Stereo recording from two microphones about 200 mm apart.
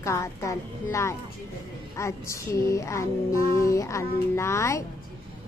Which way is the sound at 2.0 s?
15° left (ahead or behind).